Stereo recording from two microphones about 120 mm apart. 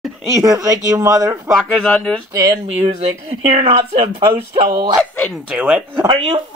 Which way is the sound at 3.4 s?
65° right (ahead or behind).